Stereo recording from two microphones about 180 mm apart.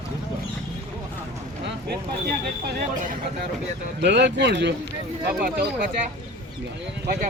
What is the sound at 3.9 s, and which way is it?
Speech, 75° right (ahead or behind).